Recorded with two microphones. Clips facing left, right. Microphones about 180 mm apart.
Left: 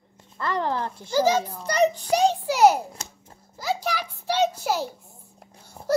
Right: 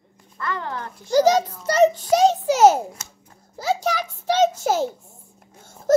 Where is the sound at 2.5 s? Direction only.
25° right (ahead or behind).